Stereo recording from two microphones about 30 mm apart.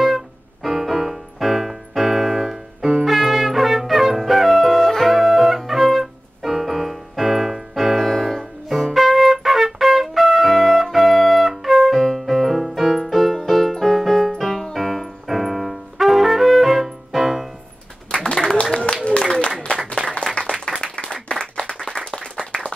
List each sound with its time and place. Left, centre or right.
0.0 s piano: centre
5.2 s music: centre
5.6 s piano: centre
7.7 s music: centre
8.0 s music: centre
8.6 s music: centre
18.3 s applause: left
20.0 s applause: left
20.7 s clapping: left
21.3 s applause: left